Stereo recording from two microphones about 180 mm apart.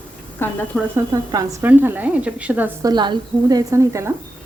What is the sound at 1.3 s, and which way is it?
A woman's voice, 15° right (ahead or behind).